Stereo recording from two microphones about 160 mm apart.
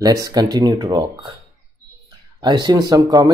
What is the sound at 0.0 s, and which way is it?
Speech, 25° right (ahead or behind).